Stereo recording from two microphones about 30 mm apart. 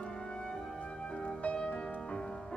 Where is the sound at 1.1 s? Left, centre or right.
Left.